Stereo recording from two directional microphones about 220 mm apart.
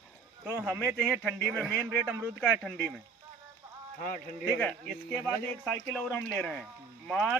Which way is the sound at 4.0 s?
40° left (ahead or behind).